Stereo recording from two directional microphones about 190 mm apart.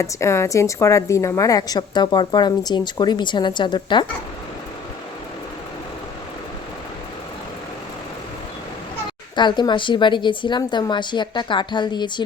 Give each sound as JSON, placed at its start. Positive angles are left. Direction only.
{"t": 0.0, "sound": "a woman's voice", "side_deg": 15}
{"t": 9.3, "sound": "a woman's voice", "side_deg": 25}